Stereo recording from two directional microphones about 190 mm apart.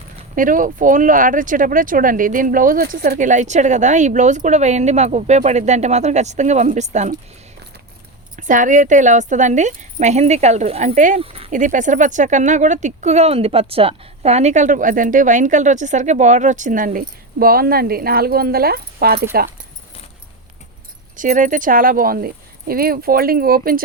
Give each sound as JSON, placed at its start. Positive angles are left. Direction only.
{"t": 0.3, "sound": "speech", "side_deg": -45}
{"t": 8.4, "sound": "speech", "side_deg": -40}
{"t": 11.5, "sound": "speech", "side_deg": -40}
{"t": 21.2, "sound": "speech", "side_deg": -40}